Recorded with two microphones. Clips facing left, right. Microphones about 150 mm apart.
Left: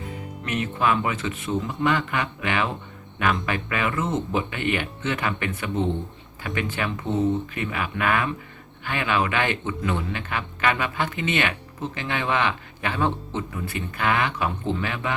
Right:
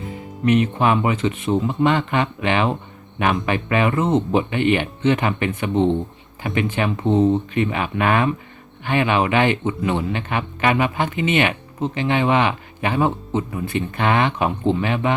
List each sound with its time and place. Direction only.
0.4 s speech: 20° right (ahead or behind)